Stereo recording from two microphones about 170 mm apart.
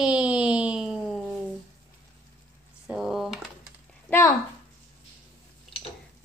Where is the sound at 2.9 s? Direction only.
5° right (ahead or behind).